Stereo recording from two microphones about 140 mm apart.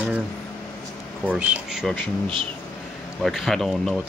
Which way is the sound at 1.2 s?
10° right (ahead or behind).